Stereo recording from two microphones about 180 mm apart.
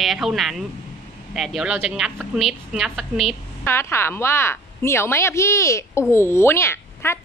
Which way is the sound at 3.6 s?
15° left (ahead or behind).